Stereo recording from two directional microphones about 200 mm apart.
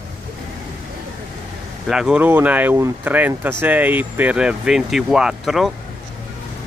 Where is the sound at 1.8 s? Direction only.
5° right (ahead or behind).